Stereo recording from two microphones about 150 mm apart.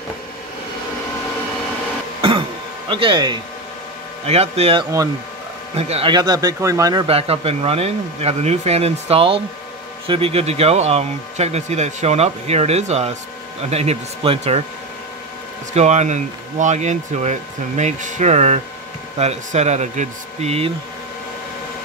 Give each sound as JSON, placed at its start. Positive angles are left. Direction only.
{"t": 2.2, "sound": "throat clearing", "side_deg": -40}
{"t": 2.9, "sound": "speech", "side_deg": -35}
{"t": 4.3, "sound": "speech", "side_deg": -45}
{"t": 6.1, "sound": "speech", "side_deg": -25}
{"t": 7.1, "sound": "speech", "side_deg": -40}
{"t": 15.7, "sound": "speech", "side_deg": -50}